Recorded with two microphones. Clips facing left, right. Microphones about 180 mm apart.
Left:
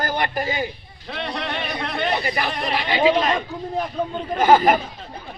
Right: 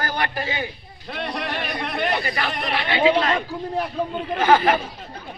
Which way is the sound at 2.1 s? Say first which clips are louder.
Left 3 dB; 20° left (ahead or behind).